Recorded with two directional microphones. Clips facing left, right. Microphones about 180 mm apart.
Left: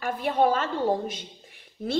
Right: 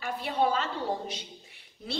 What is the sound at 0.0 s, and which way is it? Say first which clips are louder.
A woman's voice: left 5 dB; 50° left (ahead or behind).